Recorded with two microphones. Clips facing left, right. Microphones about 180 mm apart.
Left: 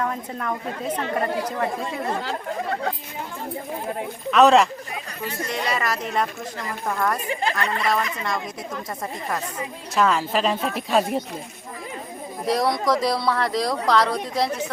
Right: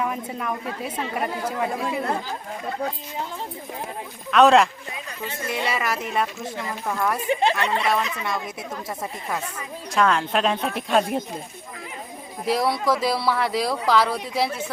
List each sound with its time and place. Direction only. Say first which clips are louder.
0.0 s a woman's voice: even; 10° right (ahead or behind)
1.7 s speech: right 2 dB; 65° right (ahead or behind)
2.2 s speech: left 4 dB; 70° left (ahead or behind)
4.3 s speech: even; centre (ahead or behind)
7.3 s speech: right 3 dB; 25° right (ahead or behind)
7.9 s speech: even; 5° right (ahead or behind)
9.9 s speech: even; centre (ahead or behind)
12.5 s speech: left 1 dB; 5° right (ahead or behind)